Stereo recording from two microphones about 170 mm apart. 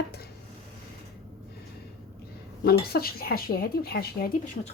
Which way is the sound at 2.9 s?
60° left (ahead or behind).